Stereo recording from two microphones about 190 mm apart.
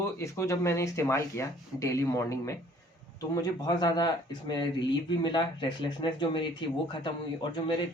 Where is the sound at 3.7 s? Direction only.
20° left (ahead or behind).